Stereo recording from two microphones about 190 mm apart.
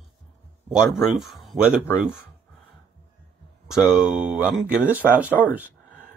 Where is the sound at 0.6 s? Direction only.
5° right (ahead or behind).